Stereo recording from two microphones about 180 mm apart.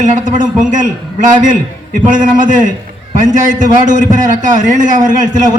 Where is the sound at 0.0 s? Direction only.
45° right (ahead or behind).